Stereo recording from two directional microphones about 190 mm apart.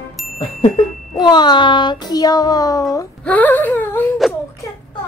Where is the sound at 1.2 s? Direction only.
20° left (ahead or behind).